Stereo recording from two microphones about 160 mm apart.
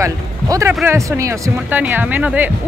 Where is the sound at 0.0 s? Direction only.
20° right (ahead or behind).